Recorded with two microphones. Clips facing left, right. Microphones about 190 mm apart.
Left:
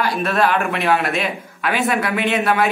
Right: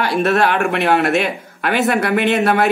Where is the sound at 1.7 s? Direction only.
40° right (ahead or behind).